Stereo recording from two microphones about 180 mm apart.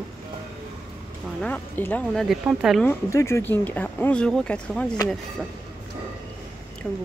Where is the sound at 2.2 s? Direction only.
Centre (ahead or behind).